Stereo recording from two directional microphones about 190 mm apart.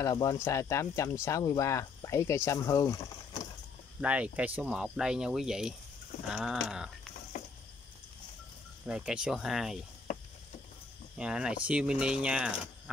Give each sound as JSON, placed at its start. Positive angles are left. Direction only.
{"t": 0.0, "sound": "speech", "side_deg": 20}
{"t": 4.0, "sound": "speech", "side_deg": -5}
{"t": 6.2, "sound": "a sound", "side_deg": -5}
{"t": 8.8, "sound": "speech", "side_deg": -5}
{"t": 11.1, "sound": "speech", "side_deg": -5}